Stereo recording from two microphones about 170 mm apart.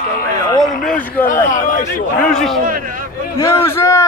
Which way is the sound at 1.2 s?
50° left (ahead or behind).